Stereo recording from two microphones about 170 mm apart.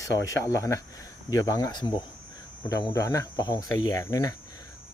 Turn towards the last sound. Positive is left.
turn(degrees=20)  # may be behind; listen again after turning